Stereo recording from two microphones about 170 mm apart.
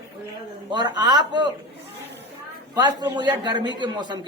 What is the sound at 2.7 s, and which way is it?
A woman's voice, 25° right (ahead or behind).